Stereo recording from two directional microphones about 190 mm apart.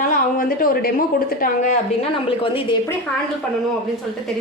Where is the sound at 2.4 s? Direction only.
30° left (ahead or behind).